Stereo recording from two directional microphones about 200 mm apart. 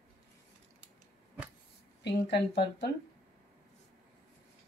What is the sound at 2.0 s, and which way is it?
Speech, 60° left (ahead or behind).